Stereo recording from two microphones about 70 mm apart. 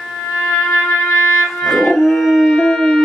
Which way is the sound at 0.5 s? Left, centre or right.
Left.